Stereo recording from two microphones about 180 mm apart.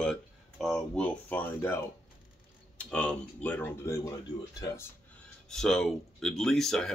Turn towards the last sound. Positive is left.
turn(degrees=0)  # may be behind; listen again after turning